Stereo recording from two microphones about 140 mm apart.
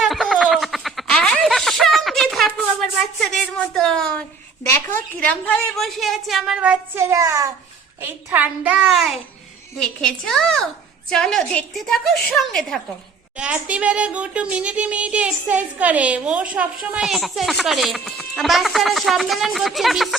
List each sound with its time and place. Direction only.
0.0 s a sound: centre (ahead or behind)
4.7 s a child's voice: 10° left (ahead or behind); by 7.0 s 10° right (ahead or behind)
7.0 s a child's voice: 20° right (ahead or behind)
8.0 s a child's voice: 10° right (ahead or behind)
13.3 s a child's voice: 10° right (ahead or behind)